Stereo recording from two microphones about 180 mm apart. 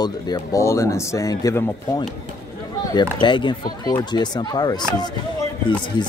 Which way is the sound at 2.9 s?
25° left (ahead or behind).